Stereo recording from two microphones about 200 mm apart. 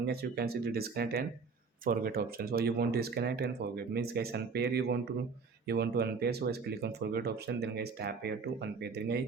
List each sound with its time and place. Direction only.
0.0 s speech: 50° right (ahead or behind)